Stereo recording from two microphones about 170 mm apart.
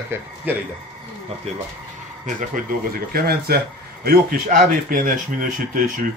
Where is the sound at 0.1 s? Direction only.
15° right (ahead or behind).